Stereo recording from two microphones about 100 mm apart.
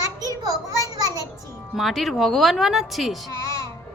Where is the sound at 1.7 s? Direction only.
Centre (ahead or behind).